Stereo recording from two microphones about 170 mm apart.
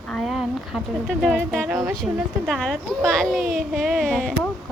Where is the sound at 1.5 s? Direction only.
5° left (ahead or behind).